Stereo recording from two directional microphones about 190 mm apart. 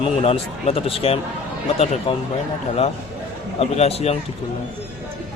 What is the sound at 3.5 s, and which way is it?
Speech, 30° left (ahead or behind).